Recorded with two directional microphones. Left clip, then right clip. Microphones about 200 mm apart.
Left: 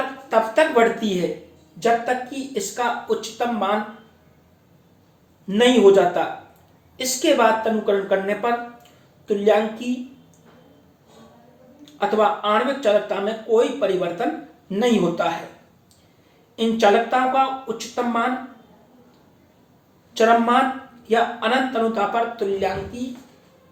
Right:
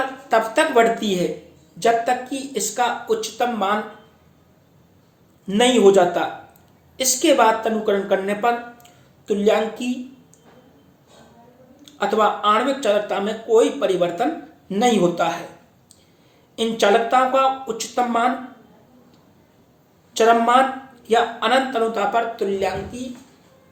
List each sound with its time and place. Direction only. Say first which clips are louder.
0.3 s speech: even; 45° right (ahead or behind)
5.5 s speech: even; 45° right (ahead or behind)
11.9 s speech: even; 45° right (ahead or behind)
16.6 s speech: even; 45° right (ahead or behind)
20.1 s speech: right 2 dB; 45° right (ahead or behind)